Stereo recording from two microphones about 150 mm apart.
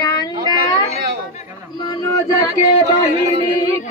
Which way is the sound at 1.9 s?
20° left (ahead or behind).